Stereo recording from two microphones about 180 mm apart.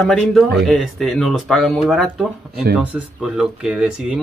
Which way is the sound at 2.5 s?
60° right (ahead or behind).